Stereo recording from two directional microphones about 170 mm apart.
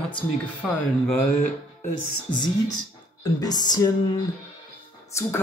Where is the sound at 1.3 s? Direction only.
55° left (ahead or behind).